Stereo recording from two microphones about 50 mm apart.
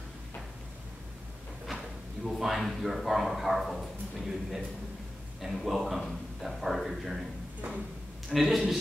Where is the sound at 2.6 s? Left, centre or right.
Centre.